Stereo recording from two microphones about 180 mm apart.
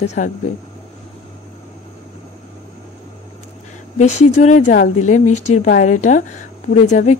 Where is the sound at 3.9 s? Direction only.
40° left (ahead or behind).